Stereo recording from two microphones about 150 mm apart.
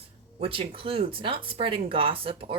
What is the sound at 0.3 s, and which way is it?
Speech, 40° right (ahead or behind).